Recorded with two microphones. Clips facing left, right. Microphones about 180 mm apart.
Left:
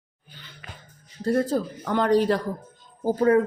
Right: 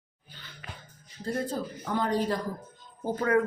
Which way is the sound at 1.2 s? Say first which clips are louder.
Left 8 dB; 75° left (ahead or behind).